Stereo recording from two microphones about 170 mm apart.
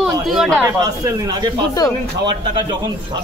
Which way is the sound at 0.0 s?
Centre (ahead or behind).